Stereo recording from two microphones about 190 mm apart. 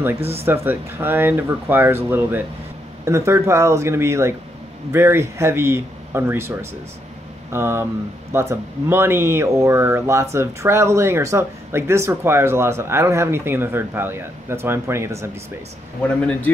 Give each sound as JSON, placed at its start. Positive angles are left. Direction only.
{"t": 0.2, "sound": "speech", "side_deg": -30}
{"t": 0.5, "sound": "speech", "side_deg": -10}